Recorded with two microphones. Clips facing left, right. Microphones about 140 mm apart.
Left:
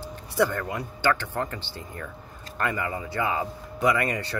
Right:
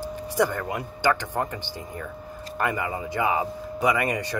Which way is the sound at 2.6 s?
15° right (ahead or behind).